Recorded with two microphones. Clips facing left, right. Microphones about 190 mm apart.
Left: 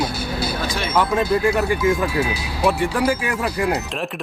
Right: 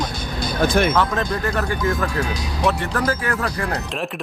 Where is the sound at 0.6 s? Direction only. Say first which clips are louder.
Right 8 dB; 55° right (ahead or behind).